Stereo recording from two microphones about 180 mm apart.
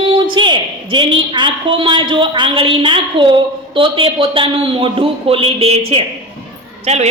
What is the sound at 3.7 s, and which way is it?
A man's voice, 30° right (ahead or behind).